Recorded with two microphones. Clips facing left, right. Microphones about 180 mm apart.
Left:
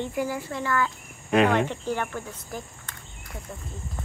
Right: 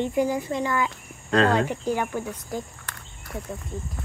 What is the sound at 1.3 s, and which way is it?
Speech, 15° left (ahead or behind).